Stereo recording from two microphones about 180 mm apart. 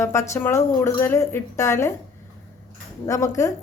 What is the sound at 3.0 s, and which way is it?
Speech, 20° left (ahead or behind).